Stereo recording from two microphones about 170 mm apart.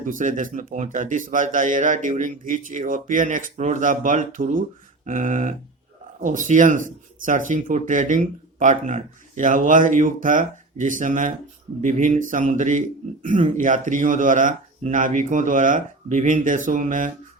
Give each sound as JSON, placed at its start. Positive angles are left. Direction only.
{"t": 0.0, "sound": "speech", "side_deg": -50}